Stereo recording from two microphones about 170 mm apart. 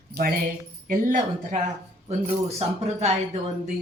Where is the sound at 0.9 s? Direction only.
50° right (ahead or behind).